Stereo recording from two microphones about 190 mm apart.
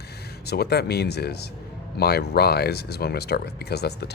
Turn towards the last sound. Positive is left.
turn(degrees=60)  # may be behind; listen again after turning